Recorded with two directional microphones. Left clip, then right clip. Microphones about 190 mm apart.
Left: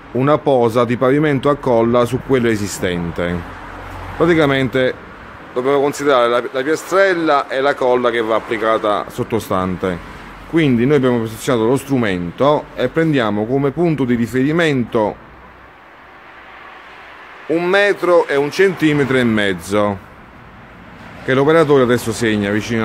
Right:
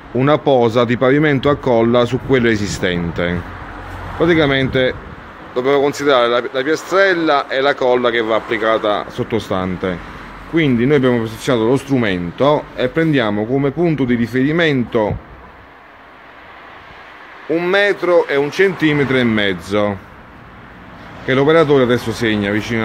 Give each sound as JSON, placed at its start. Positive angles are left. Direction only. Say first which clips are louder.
{"t": 0.1, "sound": "speech", "louder": "right 1 dB", "side_deg": 0}
{"t": 2.8, "sound": "a sound", "louder": "right 1 dB", "side_deg": 0}
{"t": 4.2, "sound": "speech", "louder": "even", "side_deg": 15}
{"t": 17.5, "sound": "speech", "louder": "even", "side_deg": 15}
{"t": 21.3, "sound": "speech", "louder": "even", "side_deg": 10}